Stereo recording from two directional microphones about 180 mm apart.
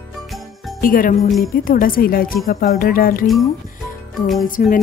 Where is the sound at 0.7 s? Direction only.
50° left (ahead or behind).